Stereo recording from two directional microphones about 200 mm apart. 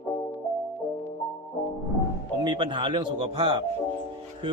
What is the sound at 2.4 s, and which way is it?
Speech, 25° right (ahead or behind).